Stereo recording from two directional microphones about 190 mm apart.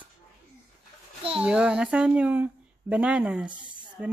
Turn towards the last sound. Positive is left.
turn(degrees=-5)  # may be behind; listen again after turning